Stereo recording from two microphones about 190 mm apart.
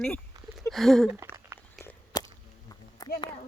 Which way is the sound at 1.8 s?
20° left (ahead or behind).